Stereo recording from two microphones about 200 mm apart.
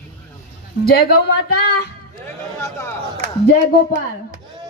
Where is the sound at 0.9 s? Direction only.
50° left (ahead or behind).